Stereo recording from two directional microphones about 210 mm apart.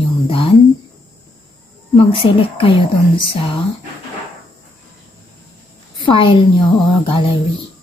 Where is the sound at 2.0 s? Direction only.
25° left (ahead or behind).